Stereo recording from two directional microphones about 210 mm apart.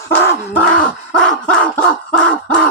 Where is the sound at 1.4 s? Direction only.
5° left (ahead or behind).